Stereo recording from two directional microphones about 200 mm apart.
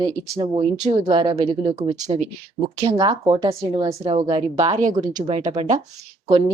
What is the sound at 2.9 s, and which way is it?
A woman's voice, 20° right (ahead or behind).